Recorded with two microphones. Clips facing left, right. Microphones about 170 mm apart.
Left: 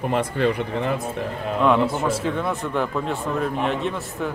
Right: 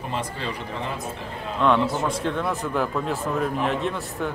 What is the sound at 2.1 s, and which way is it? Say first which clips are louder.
A man's voice: left 2 dB; centre (ahead or behind).